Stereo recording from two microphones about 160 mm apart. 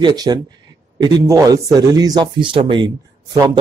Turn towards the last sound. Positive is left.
turn(degrees=-25)  # may be behind; listen again after turning